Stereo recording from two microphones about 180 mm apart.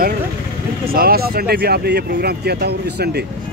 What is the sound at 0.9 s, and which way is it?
Speech, 55° right (ahead or behind).